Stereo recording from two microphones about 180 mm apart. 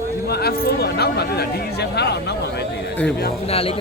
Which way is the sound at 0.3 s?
60° left (ahead or behind).